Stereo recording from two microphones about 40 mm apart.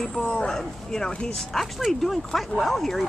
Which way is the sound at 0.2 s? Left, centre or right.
Left.